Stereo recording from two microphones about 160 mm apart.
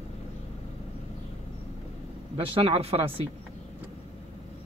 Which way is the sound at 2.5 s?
40° right (ahead or behind).